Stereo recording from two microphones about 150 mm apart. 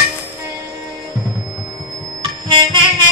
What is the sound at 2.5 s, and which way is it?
Music, 30° right (ahead or behind).